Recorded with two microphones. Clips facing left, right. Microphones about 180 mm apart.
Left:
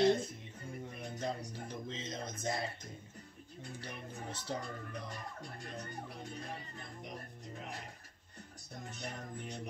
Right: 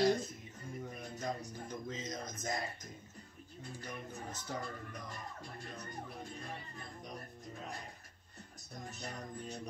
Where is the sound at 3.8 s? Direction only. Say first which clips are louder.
Right 1 dB; 30° left (ahead or behind).